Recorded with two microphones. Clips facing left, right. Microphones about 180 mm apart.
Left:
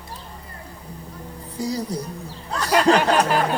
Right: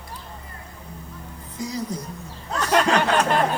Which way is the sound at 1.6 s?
35° left (ahead or behind).